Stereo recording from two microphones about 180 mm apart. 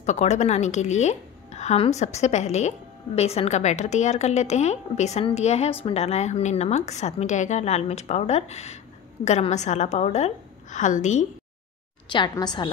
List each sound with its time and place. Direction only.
0.0 s a woman's voice: 40° left (ahead or behind)
12.1 s a woman's voice: 25° left (ahead or behind)